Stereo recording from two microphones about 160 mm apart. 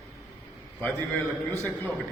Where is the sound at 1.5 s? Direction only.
10° left (ahead or behind).